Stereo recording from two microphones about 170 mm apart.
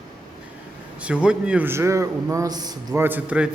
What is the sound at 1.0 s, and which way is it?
A man's voice, 5° right (ahead or behind).